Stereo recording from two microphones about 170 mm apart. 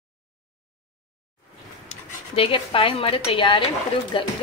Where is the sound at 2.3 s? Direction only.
35° left (ahead or behind).